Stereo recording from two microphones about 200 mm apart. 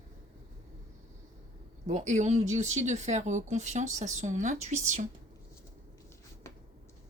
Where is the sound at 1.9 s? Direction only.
35° right (ahead or behind).